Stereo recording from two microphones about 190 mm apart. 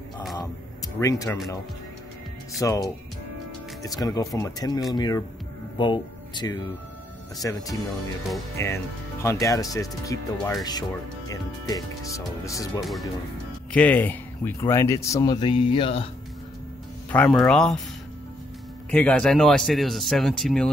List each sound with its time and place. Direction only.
0.9 s speech: 15° left (ahead or behind)
2.6 s speech: 20° left (ahead or behind)
17.1 s a man's voice: 5° left (ahead or behind)
18.9 s a man's voice: 5° left (ahead or behind)